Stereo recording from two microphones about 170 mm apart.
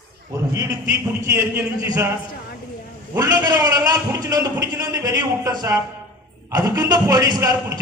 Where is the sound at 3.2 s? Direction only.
25° right (ahead or behind).